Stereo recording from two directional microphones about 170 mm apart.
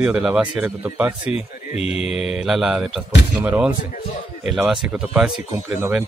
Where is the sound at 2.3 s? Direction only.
5° right (ahead or behind).